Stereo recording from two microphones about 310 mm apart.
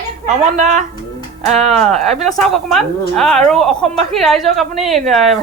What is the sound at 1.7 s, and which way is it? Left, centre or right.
A woman's voice, centre.